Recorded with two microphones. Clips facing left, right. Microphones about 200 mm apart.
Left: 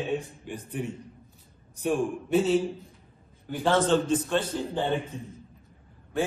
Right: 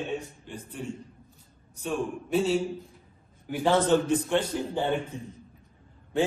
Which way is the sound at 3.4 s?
10° right (ahead or behind).